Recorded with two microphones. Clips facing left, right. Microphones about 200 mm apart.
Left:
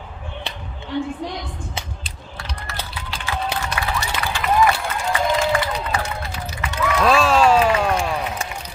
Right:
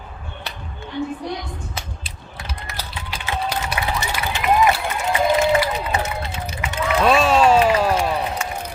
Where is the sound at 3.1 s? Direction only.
20° right (ahead or behind).